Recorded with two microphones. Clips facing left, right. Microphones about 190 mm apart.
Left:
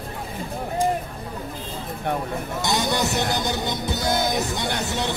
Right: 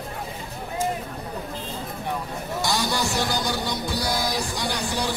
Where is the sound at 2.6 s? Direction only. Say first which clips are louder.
Left 2 dB; 20° left (ahead or behind).